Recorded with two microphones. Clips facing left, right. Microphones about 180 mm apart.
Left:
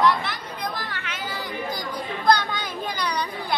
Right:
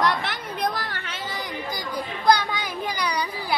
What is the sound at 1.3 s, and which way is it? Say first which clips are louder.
Chatter: left 2 dB; 15° right (ahead or behind).